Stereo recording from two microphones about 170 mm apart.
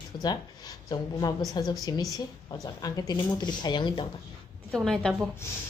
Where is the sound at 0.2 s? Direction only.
20° left (ahead or behind).